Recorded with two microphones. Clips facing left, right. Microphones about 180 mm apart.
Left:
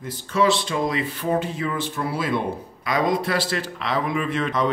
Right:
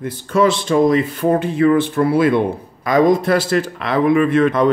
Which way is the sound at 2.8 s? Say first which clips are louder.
Right 9 dB; 45° right (ahead or behind).